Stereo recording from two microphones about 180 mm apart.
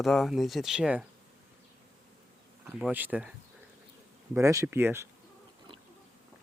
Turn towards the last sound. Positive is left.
turn(degrees=-15)  # may be behind; listen again after turning